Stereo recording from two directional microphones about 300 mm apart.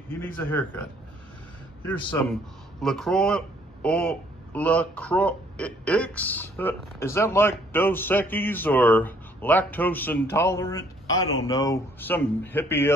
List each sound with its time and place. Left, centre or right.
0.4 s a man's voice: centre